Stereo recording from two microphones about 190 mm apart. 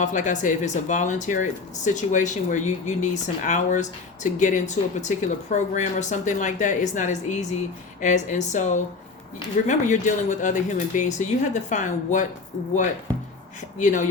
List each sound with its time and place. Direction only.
0.0 s speech: 40° left (ahead or behind)
13.7 s speech: 40° left (ahead or behind)